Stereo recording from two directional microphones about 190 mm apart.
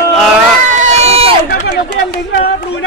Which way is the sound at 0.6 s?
40° right (ahead or behind).